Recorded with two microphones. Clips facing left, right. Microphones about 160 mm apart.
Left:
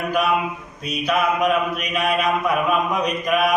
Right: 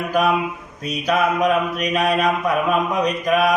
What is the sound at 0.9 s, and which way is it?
Mantra, 40° right (ahead or behind).